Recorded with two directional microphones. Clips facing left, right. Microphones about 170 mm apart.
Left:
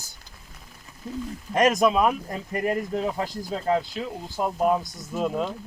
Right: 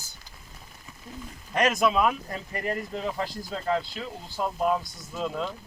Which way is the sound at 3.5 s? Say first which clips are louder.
Left 4 dB; 35° left (ahead or behind).